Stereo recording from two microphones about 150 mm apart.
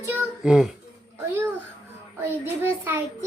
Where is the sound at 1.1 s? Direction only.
15° right (ahead or behind).